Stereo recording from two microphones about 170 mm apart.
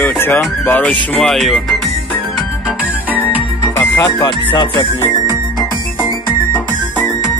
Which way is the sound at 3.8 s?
20° left (ahead or behind).